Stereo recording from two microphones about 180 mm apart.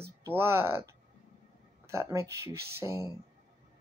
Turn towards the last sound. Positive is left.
turn(degrees=-15)  # may be behind; listen again after turning